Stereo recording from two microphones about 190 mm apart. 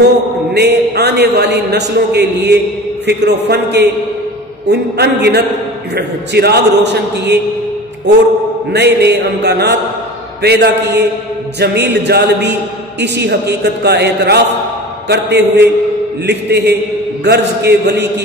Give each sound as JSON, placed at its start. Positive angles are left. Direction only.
{"t": 0.5, "sound": "a man's voice", "side_deg": -60}
{"t": 8.7, "sound": "a man's voice", "side_deg": -60}